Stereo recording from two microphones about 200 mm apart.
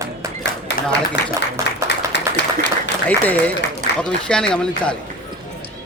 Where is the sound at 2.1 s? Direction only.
60° left (ahead or behind).